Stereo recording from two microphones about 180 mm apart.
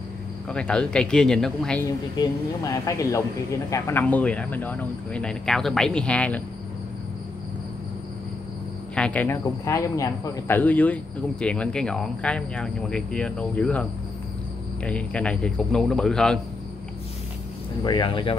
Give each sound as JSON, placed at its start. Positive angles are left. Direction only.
{"t": 0.5, "sound": "speech", "side_deg": 5}
{"t": 1.9, "sound": "speech", "side_deg": 20}
{"t": 8.9, "sound": "speech", "side_deg": 5}
{"t": 14.9, "sound": "speech", "side_deg": 5}
{"t": 17.8, "sound": "speech", "side_deg": 25}